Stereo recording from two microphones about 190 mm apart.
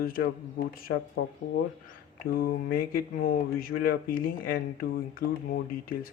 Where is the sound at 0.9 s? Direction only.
70° left (ahead or behind).